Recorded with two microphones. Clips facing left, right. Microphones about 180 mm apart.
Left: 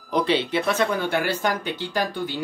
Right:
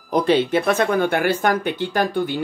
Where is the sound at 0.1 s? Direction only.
45° right (ahead or behind).